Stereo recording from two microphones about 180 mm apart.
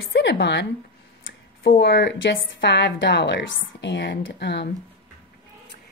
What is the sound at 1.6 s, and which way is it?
A woman's voice, 60° left (ahead or behind).